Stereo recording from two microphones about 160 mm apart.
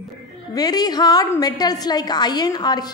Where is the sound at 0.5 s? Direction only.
25° left (ahead or behind).